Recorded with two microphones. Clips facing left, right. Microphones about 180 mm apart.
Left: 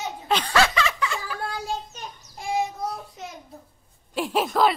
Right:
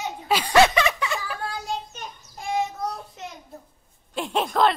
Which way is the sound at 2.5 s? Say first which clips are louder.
Even; 5° left (ahead or behind).